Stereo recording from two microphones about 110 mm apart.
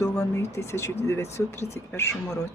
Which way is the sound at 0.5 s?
25° left (ahead or behind).